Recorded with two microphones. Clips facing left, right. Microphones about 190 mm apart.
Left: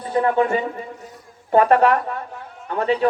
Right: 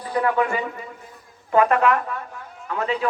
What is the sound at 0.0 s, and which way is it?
A man's voice, 25° left (ahead or behind).